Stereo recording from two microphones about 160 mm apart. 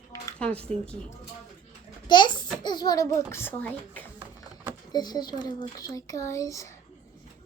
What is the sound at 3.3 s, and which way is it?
Speech, 10° left (ahead or behind).